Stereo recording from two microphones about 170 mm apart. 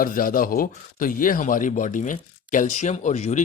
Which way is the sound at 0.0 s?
55° left (ahead or behind).